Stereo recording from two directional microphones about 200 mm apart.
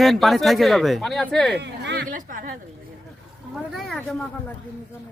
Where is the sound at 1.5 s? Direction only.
60° right (ahead or behind).